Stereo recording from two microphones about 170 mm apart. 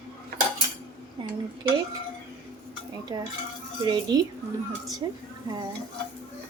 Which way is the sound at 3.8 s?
25° right (ahead or behind).